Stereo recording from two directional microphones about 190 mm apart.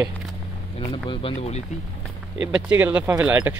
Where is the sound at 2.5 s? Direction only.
10° right (ahead or behind).